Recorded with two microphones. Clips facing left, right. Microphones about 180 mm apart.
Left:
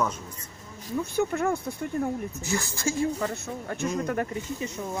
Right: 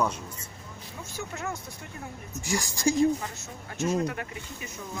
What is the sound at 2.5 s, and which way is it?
Speech, 15° right (ahead or behind).